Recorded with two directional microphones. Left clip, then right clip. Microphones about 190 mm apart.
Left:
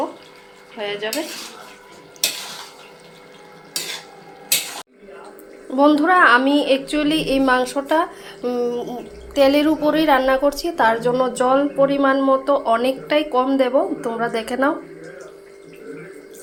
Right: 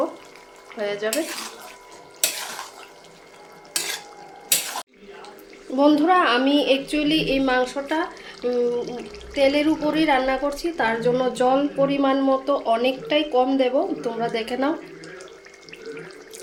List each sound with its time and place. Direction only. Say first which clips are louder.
0.8 s speech: even; 15° right (ahead or behind)
5.7 s speech: left 3 dB; centre (ahead or behind)
11.1 s speech: left 3 dB; 5° right (ahead or behind)